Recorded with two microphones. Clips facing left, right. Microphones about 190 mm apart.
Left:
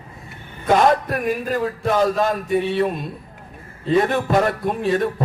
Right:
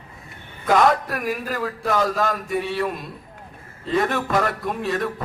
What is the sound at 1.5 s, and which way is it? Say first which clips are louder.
Speech: left 4 dB; 25° left (ahead or behind).